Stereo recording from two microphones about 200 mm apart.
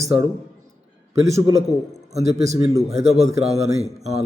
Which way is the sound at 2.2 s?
35° right (ahead or behind).